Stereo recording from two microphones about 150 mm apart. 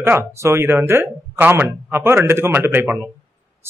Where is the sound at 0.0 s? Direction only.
15° right (ahead or behind).